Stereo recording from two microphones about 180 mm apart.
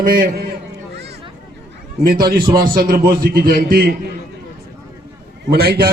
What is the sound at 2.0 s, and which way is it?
A man's voice, 55° right (ahead or behind).